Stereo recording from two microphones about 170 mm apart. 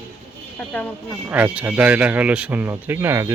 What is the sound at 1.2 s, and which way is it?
Speech, 10° right (ahead or behind).